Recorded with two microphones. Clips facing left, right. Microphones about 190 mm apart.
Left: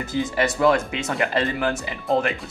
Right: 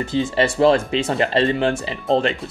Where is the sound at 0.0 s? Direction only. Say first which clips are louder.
Right 4 dB; 30° right (ahead or behind).